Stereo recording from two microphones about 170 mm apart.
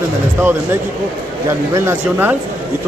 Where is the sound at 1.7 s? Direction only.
15° right (ahead or behind).